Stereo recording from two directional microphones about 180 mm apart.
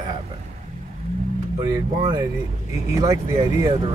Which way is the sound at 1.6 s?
20° right (ahead or behind).